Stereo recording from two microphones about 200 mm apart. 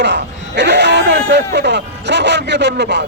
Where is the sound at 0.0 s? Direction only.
60° right (ahead or behind).